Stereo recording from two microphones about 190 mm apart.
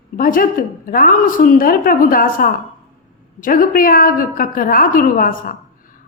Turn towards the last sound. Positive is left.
turn(degrees=45)  # may be behind; listen again after turning